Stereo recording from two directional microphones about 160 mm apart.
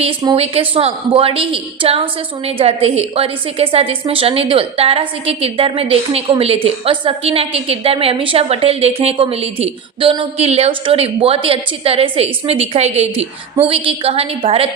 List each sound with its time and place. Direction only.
0.3 s a woman's voice: 35° right (ahead or behind)